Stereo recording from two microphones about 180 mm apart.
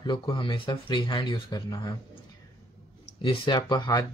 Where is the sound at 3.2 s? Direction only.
25° left (ahead or behind).